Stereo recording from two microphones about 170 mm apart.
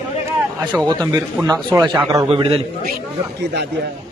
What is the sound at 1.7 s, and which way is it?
Speech, 25° right (ahead or behind).